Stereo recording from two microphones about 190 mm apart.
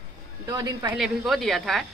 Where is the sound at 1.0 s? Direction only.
Centre (ahead or behind).